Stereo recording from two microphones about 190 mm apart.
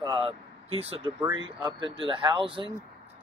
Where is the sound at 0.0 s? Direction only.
25° right (ahead or behind).